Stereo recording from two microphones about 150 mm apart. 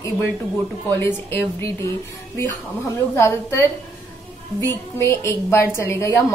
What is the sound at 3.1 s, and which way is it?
Speech, 15° left (ahead or behind).